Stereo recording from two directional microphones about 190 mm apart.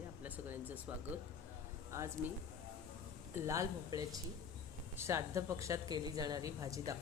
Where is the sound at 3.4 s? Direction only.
15° right (ahead or behind).